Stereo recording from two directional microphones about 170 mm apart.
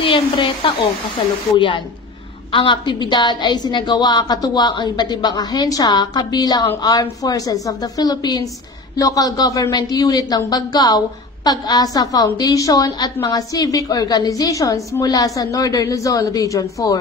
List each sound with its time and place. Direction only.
0.0 s speech: 30° left (ahead or behind)
2.5 s a woman's voice: 30° left (ahead or behind)